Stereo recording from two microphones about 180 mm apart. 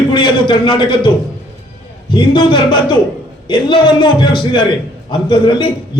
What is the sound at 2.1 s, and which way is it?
A man's voice, 25° left (ahead or behind).